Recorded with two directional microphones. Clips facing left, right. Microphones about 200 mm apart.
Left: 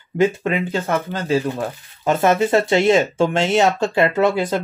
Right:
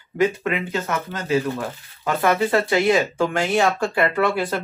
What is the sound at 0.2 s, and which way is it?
Speech, 30° left (ahead or behind).